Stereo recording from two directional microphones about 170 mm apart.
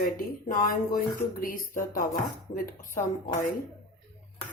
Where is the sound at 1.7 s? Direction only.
55° left (ahead or behind).